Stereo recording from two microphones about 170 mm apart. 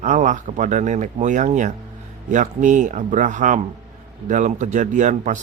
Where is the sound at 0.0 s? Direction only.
45° right (ahead or behind).